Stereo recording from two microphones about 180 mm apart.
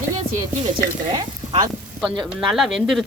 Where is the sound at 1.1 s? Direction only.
20° right (ahead or behind).